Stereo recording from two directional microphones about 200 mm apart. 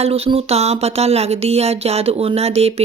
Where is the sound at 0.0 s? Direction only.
30° right (ahead or behind).